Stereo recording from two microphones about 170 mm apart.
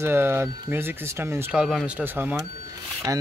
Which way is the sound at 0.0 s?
15° right (ahead or behind).